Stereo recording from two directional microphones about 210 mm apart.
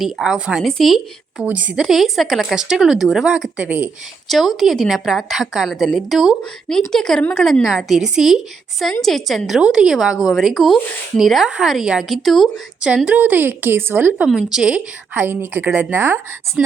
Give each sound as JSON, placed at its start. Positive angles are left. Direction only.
{"t": 0.0, "sound": "a woman's voice", "side_deg": 0}